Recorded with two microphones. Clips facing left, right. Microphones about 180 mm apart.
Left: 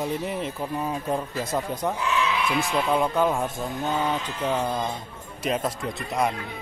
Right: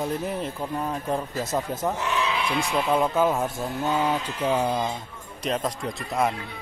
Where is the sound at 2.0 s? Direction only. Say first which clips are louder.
Left 1 dB; 35° right (ahead or behind).